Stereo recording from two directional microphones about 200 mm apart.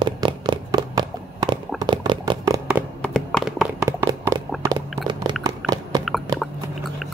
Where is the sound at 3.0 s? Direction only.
Centre (ahead or behind).